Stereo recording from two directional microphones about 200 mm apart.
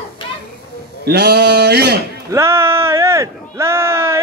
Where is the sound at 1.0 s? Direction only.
55° right (ahead or behind).